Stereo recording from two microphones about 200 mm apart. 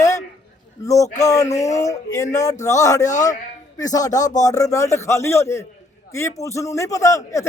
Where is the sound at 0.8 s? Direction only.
15° left (ahead or behind).